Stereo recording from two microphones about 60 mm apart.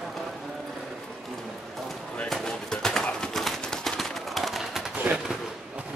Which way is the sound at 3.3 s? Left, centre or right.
Centre.